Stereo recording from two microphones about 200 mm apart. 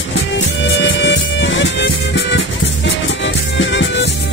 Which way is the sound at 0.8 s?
65° left (ahead or behind).